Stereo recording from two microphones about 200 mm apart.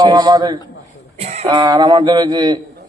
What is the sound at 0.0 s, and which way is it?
Speech, 25° right (ahead or behind).